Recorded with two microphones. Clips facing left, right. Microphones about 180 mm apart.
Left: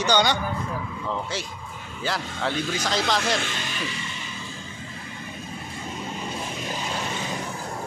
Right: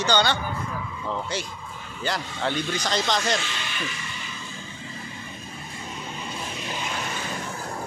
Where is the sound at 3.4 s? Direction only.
50° left (ahead or behind).